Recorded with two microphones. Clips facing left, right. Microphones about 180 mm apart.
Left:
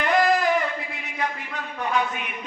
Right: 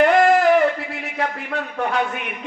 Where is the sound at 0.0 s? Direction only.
60° right (ahead or behind).